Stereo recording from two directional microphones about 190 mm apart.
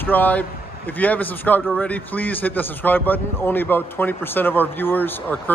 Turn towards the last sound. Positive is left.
turn(degrees=10)  # may be behind; listen again after turning